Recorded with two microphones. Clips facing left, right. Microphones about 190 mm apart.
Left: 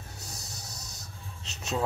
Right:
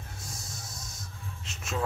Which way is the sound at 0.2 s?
70° left (ahead or behind).